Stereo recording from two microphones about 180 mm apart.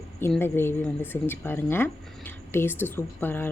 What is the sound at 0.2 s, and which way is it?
Speech, 10° left (ahead or behind).